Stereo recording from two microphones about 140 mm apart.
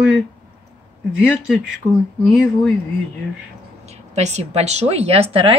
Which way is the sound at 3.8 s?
55° right (ahead or behind).